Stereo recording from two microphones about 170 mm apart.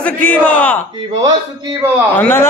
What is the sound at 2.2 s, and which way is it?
Speech, 15° left (ahead or behind).